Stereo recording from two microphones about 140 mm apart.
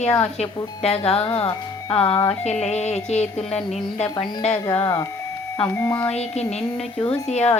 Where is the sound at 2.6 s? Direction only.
50° left (ahead or behind).